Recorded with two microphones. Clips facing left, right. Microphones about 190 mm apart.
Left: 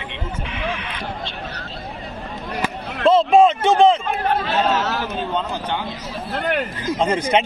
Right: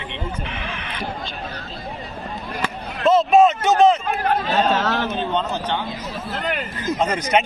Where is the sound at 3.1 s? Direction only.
30° left (ahead or behind).